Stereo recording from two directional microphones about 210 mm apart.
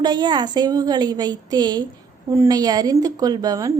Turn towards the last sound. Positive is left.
turn(degrees=-15)  # may be behind; listen again after turning